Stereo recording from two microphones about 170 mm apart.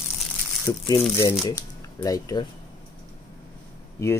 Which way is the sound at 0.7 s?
15° left (ahead or behind).